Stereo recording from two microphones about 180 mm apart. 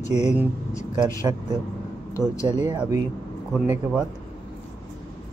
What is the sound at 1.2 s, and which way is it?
Speech, 20° right (ahead or behind).